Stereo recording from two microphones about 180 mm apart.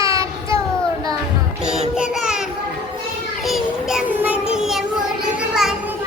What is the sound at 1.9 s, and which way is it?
Child singing, 5° right (ahead or behind).